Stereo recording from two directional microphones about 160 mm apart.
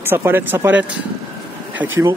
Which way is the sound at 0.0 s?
15° right (ahead or behind).